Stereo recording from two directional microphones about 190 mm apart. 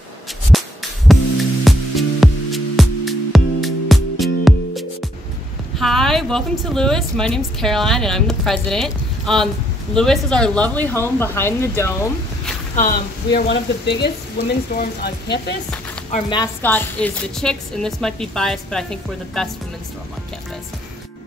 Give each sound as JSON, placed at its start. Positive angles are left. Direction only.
{"t": 0.5, "sound": "music", "side_deg": 0}
{"t": 5.8, "sound": "a woman's voice", "side_deg": 0}
{"t": 12.7, "sound": "speech", "side_deg": 45}
{"t": 13.5, "sound": "speech", "side_deg": 65}
{"t": 16.6, "sound": "a woman's voice", "side_deg": 10}